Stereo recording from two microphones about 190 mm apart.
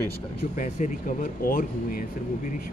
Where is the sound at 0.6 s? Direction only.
40° left (ahead or behind).